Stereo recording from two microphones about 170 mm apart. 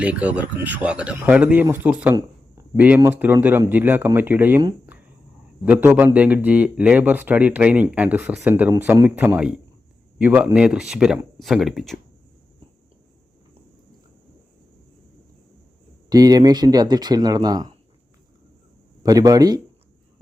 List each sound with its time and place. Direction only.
0.0 s speech: 10° right (ahead or behind)
4.9 s a sound: 10° right (ahead or behind)
5.6 s speech: 10° right (ahead or behind)
16.0 s speech: 20° right (ahead or behind)
19.0 s speech: 20° right (ahead or behind)